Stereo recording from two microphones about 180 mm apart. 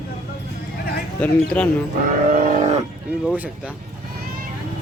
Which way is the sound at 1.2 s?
5° left (ahead or behind).